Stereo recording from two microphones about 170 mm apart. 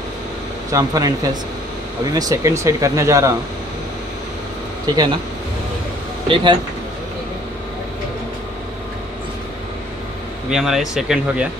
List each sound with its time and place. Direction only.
0.7 s speech: 20° right (ahead or behind)
4.8 s speech: 20° right (ahead or behind)
6.2 s speech: 30° right (ahead or behind)
10.5 s speech: centre (ahead or behind)